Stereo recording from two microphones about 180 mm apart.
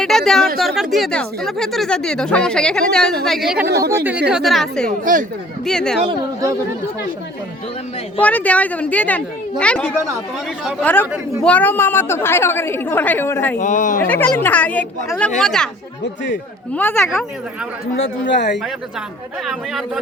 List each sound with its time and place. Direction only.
0.0 s speech: centre (ahead or behind)
3.6 s speech: 60° right (ahead or behind)
3.9 s speech: 10° right (ahead or behind)
4.9 s speech: 45° right (ahead or behind)
5.6 s speech: 5° left (ahead or behind)
6.1 s speech: 20° right (ahead or behind)
8.2 s a woman's voice: 10° left (ahead or behind)
10.8 s a woman's voice: 10° left (ahead or behind)
13.6 s speech: 45° left (ahead or behind)
14.1 s a woman's voice: 10° left (ahead or behind)
17.9 s speech: 85° left
19.5 s speech: centre (ahead or behind)